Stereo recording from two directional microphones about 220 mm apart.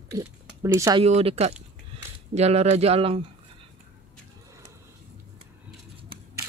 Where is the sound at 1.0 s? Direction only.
25° right (ahead or behind).